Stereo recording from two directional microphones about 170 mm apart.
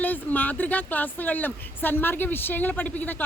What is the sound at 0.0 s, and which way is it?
A woman's voice, 10° left (ahead or behind).